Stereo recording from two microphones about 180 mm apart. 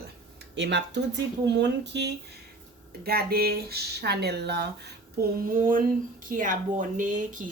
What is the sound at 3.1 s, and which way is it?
Speech, 60° right (ahead or behind).